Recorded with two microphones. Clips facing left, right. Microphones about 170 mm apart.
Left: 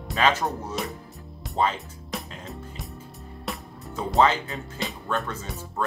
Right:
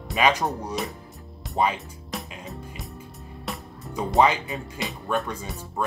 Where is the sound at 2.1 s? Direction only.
Centre (ahead or behind).